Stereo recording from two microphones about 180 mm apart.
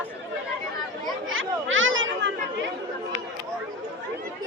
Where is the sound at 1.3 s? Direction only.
90° right.